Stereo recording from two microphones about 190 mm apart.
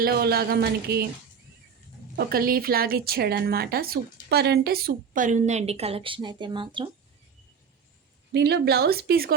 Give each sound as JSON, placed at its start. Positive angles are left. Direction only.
{"t": 0.0, "sound": "speech", "side_deg": -55}
{"t": 2.1, "sound": "speech", "side_deg": -50}
{"t": 8.3, "sound": "speech", "side_deg": -60}